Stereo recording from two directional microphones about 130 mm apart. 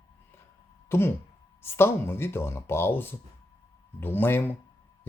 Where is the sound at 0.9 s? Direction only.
15° left (ahead or behind).